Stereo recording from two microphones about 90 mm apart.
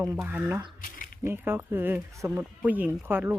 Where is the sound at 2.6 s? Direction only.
20° right (ahead or behind).